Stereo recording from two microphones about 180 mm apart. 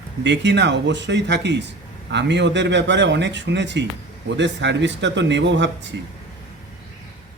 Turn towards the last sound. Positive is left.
turn(degrees=-80)